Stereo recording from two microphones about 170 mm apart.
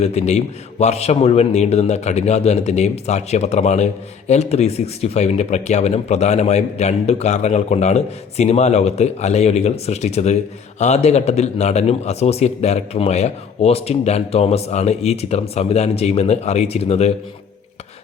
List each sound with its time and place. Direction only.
0.0 s a man's voice: 40° left (ahead or behind)